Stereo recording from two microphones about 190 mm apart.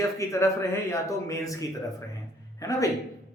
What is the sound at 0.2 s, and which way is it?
Speech, 15° left (ahead or behind).